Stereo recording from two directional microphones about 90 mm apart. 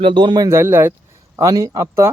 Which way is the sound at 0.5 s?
25° right (ahead or behind).